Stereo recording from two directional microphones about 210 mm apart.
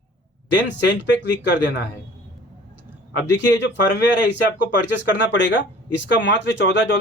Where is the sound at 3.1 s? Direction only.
60° left (ahead or behind).